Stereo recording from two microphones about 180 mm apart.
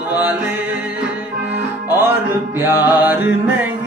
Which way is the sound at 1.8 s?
10° right (ahead or behind).